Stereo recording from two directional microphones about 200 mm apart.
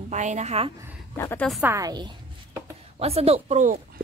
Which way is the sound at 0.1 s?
35° right (ahead or behind).